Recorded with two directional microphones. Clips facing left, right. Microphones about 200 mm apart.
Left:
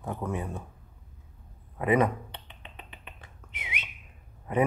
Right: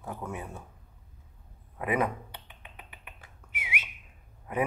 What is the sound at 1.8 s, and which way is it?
Finger snapping, 10° right (ahead or behind).